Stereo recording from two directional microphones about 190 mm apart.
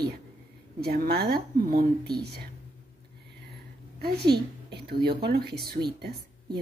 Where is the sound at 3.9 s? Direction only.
55° right (ahead or behind).